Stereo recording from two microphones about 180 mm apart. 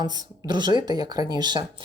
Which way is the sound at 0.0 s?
25° right (ahead or behind).